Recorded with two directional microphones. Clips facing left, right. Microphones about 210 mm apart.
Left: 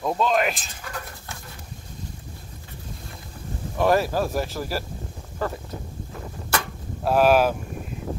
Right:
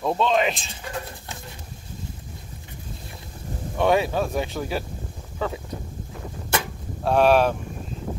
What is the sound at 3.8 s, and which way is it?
Speech, centre (ahead or behind).